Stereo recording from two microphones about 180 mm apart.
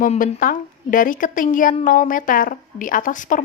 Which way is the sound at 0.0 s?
50° left (ahead or behind).